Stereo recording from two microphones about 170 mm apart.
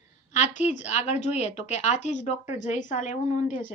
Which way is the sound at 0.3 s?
45° left (ahead or behind).